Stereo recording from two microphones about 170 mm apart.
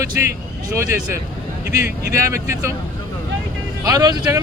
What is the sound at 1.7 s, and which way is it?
Speech, 15° right (ahead or behind).